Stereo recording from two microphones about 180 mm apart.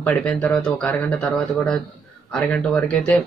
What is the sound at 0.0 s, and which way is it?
Speech, 5° left (ahead or behind).